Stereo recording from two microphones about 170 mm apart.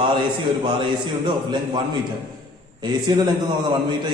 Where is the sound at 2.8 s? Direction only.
25° right (ahead or behind).